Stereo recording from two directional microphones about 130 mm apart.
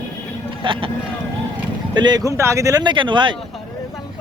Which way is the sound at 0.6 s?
40° right (ahead or behind).